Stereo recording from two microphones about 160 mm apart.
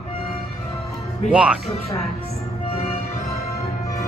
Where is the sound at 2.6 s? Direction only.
40° left (ahead or behind).